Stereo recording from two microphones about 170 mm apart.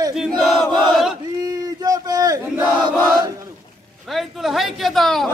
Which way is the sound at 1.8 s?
20° right (ahead or behind).